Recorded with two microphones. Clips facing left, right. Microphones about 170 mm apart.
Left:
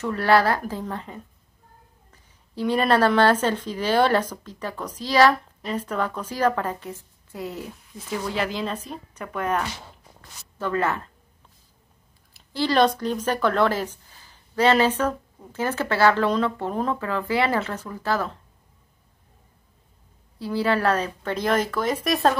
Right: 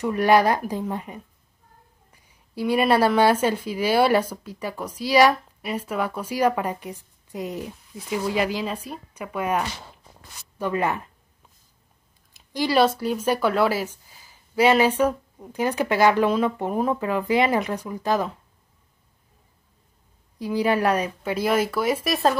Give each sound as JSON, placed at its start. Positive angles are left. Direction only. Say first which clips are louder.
{"t": 0.0, "sound": "a woman's voice", "louder": "right 2 dB", "side_deg": -15}
{"t": 12.4, "sound": "a woman's voice", "louder": "even", "side_deg": -10}
{"t": 20.3, "sound": "a woman's voice", "louder": "right 1 dB", "side_deg": -15}